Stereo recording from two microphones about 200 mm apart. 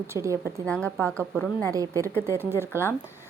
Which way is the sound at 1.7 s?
15° right (ahead or behind).